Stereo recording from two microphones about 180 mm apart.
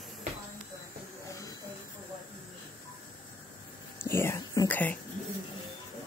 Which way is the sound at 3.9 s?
15° left (ahead or behind).